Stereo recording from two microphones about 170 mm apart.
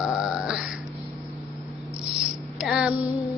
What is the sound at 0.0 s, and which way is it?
Grunt, 5° right (ahead or behind).